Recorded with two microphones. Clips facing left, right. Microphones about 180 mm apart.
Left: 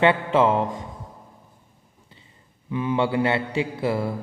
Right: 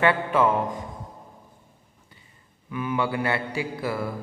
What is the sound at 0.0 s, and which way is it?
Speech, 25° left (ahead or behind).